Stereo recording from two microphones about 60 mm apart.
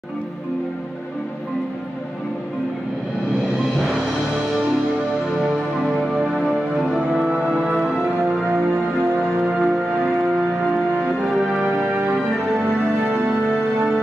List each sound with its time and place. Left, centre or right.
3.7 s music: centre
5.4 s music: centre
8.5 s music: right
9.4 s music: centre
10.0 s music: right
11.1 s music: centre
11.9 s music: right